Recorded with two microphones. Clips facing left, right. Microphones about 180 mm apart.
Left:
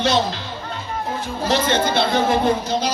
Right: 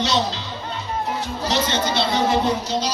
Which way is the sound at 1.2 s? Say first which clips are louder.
Left 5 dB; 55° left (ahead or behind).